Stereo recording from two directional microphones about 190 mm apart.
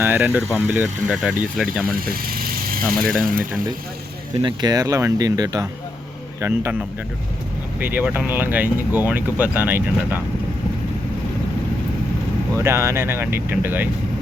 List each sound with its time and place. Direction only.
0.0 s speech: 10° right (ahead or behind)
2.0 s speech: 50° right (ahead or behind)
4.4 s speech: 20° right (ahead or behind)
12.5 s speech: 15° right (ahead or behind)